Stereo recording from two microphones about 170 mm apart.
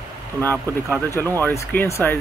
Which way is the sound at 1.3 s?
10° left (ahead or behind).